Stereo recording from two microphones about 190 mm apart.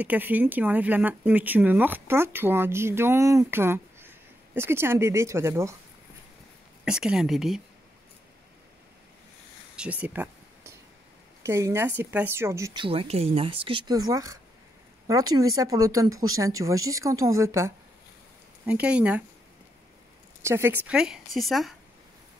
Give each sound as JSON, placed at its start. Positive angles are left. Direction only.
{"t": 0.0, "sound": "speech", "side_deg": -10}
{"t": 6.8, "sound": "a woman's voice", "side_deg": -5}
{"t": 9.8, "sound": "a sound", "side_deg": -5}
{"t": 11.4, "sound": "speech", "side_deg": -15}
{"t": 12.8, "sound": "speech", "side_deg": -30}
{"t": 20.4, "sound": "a woman's voice", "side_deg": -15}